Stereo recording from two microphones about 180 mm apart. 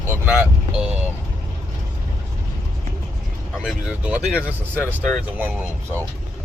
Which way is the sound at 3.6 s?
5° right (ahead or behind).